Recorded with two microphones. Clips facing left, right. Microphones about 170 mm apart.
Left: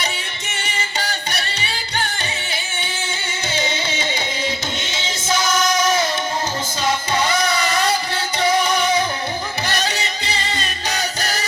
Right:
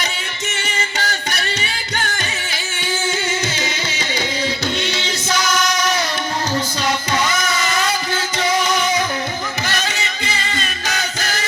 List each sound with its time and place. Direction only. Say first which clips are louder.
0.9 s music: right 1 dB; 30° left (ahead or behind)
3.5 s music: left 2 dB; 30° left (ahead or behind)